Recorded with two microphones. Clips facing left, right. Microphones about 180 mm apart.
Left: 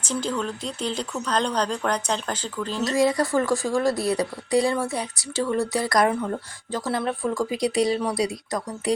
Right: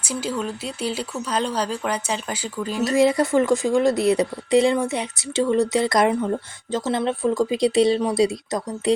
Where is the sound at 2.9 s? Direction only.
25° right (ahead or behind).